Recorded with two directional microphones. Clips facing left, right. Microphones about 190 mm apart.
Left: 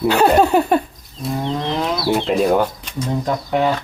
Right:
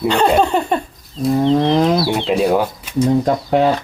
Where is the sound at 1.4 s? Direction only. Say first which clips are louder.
Right 8 dB; 35° right (ahead or behind).